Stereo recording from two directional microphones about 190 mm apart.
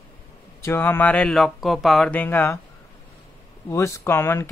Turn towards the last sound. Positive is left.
turn(degrees=10)  # may be behind; listen again after turning